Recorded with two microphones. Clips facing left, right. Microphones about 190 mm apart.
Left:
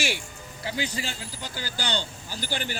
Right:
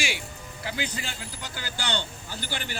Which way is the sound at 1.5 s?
35° left (ahead or behind).